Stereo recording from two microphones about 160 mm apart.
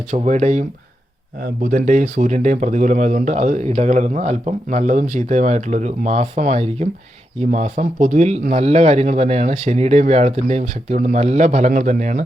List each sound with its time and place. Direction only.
0.1 s speech: 50° right (ahead or behind)
1.6 s speech: 55° right (ahead or behind)